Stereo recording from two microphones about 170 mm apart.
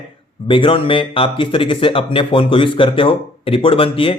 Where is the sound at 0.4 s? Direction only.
30° left (ahead or behind).